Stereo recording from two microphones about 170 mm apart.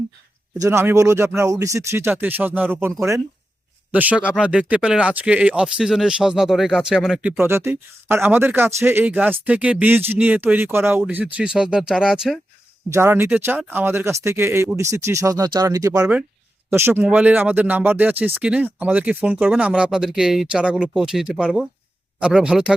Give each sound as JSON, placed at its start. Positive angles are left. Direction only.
{"t": 0.5, "sound": "speech", "side_deg": -20}
{"t": 3.9, "sound": "speech", "side_deg": -10}
{"t": 12.9, "sound": "speech", "side_deg": -15}